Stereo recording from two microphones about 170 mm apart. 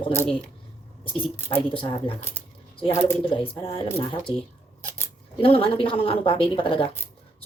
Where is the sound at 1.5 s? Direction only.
30° left (ahead or behind).